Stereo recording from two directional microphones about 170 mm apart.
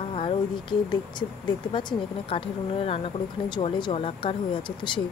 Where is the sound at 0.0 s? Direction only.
35° left (ahead or behind).